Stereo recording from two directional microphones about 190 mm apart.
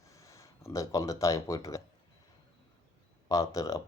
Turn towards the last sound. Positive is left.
turn(degrees=20)  # may be behind; listen again after turning